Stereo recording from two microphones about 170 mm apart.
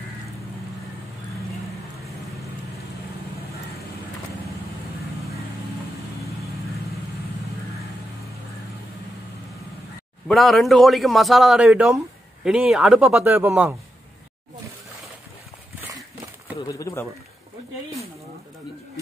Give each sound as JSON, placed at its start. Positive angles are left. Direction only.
{"t": 10.2, "sound": "a man's voice", "side_deg": 0}
{"t": 13.2, "sound": "speech", "side_deg": -15}
{"t": 16.6, "sound": "speech", "side_deg": 20}